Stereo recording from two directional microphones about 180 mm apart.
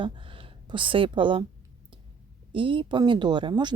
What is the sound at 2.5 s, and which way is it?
Speech, 30° right (ahead or behind).